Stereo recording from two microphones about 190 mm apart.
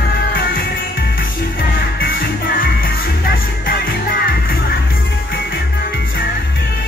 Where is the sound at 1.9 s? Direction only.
50° left (ahead or behind).